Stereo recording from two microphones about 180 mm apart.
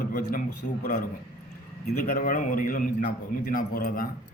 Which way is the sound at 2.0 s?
50° left (ahead or behind).